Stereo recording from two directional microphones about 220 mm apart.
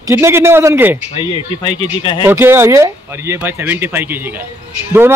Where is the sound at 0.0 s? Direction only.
10° right (ahead or behind).